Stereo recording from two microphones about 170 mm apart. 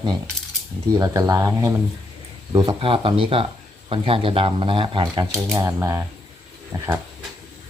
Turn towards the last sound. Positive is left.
turn(degrees=-15)  # may be behind; listen again after turning